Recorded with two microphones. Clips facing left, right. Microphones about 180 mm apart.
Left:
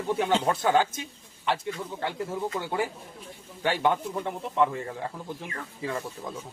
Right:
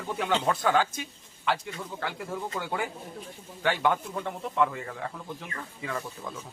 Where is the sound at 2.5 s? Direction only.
25° left (ahead or behind).